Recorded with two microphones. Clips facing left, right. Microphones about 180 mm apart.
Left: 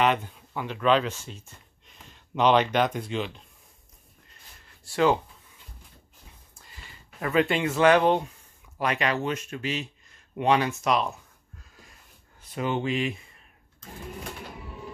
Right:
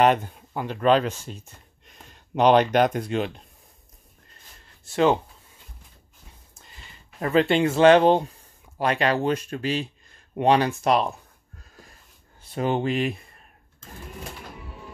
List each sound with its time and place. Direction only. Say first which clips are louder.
0.0 s speech: right 5 dB; 45° right (ahead or behind)
4.8 s speech: right 2 dB; 20° right (ahead or behind)
7.2 s speech: right 4 dB; 30° right (ahead or behind)
12.4 s speech: right 4 dB; 40° right (ahead or behind)